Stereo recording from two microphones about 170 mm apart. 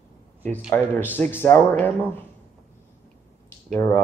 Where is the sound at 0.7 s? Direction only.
10° left (ahead or behind).